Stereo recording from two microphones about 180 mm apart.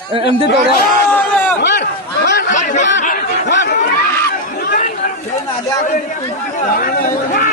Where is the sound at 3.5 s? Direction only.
80° left.